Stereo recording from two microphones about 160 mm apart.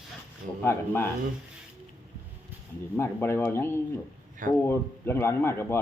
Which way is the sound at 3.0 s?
15° left (ahead or behind).